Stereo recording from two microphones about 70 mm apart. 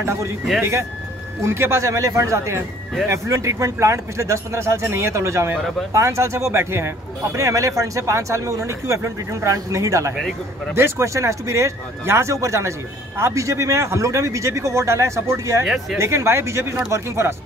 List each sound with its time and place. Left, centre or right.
0.0 s speech: right
1.8 s speech: right
7.3 s speech: right
10.7 s speech: right
15.6 s speech: centre
16.0 s speech: right